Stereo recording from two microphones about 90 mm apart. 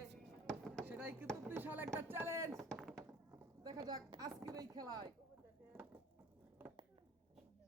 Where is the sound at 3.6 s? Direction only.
50° right (ahead or behind).